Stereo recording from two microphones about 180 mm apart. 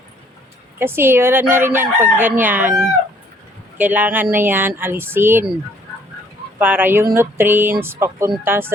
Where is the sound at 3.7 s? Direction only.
10° right (ahead or behind).